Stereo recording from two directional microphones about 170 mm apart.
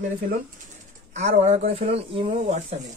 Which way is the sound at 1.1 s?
40° right (ahead or behind).